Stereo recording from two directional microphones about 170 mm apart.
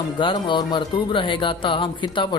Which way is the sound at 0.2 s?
30° left (ahead or behind).